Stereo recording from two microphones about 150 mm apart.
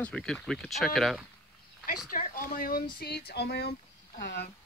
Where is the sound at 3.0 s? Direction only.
90° left.